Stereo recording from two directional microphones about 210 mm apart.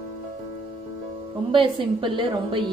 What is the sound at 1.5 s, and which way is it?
A woman's voice, 25° right (ahead or behind).